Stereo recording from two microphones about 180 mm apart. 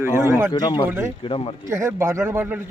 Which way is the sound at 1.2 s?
30° left (ahead or behind).